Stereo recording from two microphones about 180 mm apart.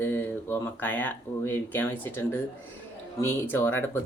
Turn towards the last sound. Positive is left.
turn(degrees=10)  # may be behind; listen again after turning